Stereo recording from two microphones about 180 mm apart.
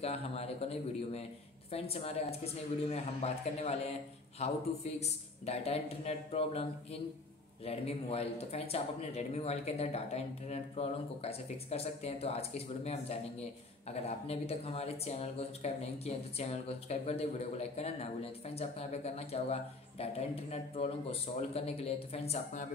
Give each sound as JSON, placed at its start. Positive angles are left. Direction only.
{"t": 0.0, "sound": "speech", "side_deg": 35}